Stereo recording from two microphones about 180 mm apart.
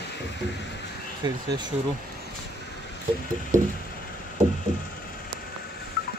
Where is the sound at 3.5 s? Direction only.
45° right (ahead or behind).